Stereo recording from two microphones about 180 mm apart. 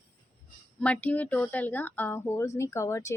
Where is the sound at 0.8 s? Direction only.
10° left (ahead or behind).